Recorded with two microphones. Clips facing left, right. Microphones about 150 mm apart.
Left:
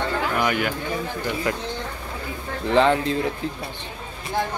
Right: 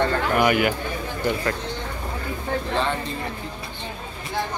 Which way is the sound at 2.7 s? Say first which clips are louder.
Left 11 dB; 90° left.